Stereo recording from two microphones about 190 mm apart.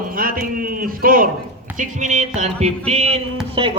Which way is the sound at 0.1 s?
50° right (ahead or behind).